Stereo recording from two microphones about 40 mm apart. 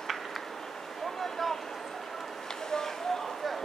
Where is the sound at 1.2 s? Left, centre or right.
Centre.